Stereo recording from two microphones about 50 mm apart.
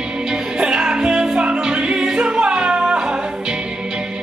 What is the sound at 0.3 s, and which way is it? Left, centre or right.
Music, centre.